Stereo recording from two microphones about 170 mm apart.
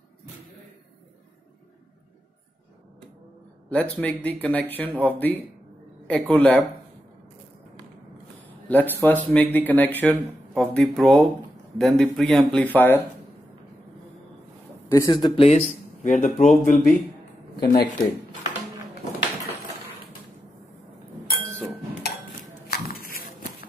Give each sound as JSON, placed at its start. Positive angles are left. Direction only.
{"t": 3.7, "sound": "speech", "side_deg": 10}
{"t": 8.6, "sound": "speech", "side_deg": 10}
{"t": 15.0, "sound": "speech", "side_deg": 25}
{"t": 16.0, "sound": "speech", "side_deg": 45}
{"t": 17.6, "sound": "speech", "side_deg": 65}
{"t": 22.7, "sound": "a sound", "side_deg": 60}